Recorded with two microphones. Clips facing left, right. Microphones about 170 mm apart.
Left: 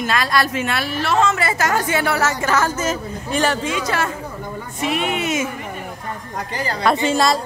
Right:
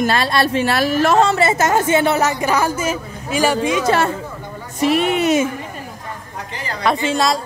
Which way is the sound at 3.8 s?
30° right (ahead or behind).